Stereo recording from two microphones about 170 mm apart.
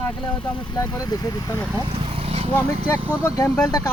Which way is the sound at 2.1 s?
35° right (ahead or behind).